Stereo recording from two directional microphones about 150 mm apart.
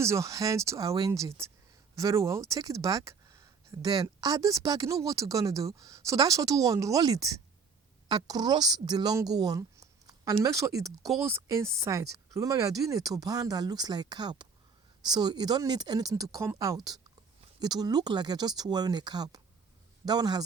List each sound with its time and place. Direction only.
0.0 s a woman's voice: 20° right (ahead or behind)